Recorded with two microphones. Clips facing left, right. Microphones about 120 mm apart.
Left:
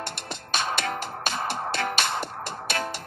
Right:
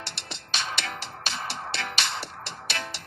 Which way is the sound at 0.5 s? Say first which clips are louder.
Left 5 dB; 50° left (ahead or behind).